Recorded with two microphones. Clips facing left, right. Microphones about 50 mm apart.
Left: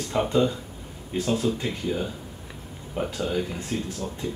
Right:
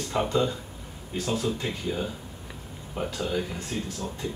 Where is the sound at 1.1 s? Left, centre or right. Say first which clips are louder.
Left 4 dB; left.